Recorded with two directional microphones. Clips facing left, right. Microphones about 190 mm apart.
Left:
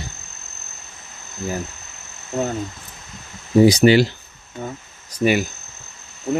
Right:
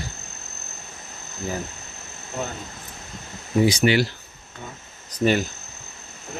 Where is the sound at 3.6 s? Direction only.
35° left (ahead or behind).